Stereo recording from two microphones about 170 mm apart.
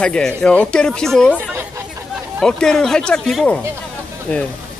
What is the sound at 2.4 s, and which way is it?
A man's voice, 5° left (ahead or behind).